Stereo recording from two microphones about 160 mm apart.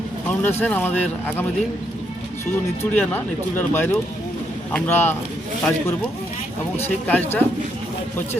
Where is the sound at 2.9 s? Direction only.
10° left (ahead or behind).